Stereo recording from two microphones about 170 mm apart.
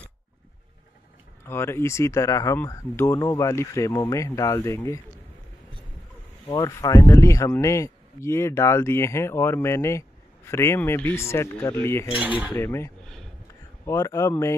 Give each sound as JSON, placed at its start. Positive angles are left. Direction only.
{"t": 1.4, "sound": "speech", "side_deg": 15}
{"t": 6.5, "sound": "speech", "side_deg": 20}
{"t": 12.2, "sound": "cutlery", "side_deg": -10}
{"t": 12.5, "sound": "speech", "side_deg": 15}
{"t": 13.0, "sound": "a sound", "side_deg": 5}
{"t": 13.8, "sound": "speech", "side_deg": 20}